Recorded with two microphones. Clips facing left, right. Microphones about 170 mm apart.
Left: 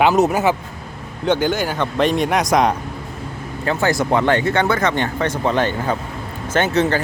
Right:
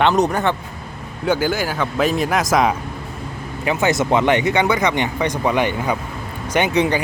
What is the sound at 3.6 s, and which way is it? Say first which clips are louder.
Speech: even; 20° right (ahead or behind).